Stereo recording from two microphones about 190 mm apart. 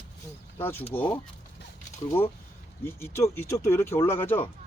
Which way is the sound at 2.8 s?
15° left (ahead or behind).